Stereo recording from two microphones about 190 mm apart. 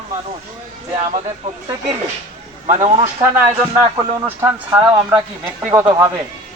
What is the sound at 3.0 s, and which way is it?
Speech, 15° right (ahead or behind).